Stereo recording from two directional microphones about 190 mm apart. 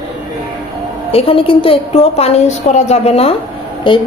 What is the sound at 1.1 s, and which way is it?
A woman's voice, 30° left (ahead or behind).